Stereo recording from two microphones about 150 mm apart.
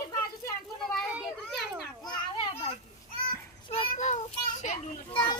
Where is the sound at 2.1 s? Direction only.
35° left (ahead or behind).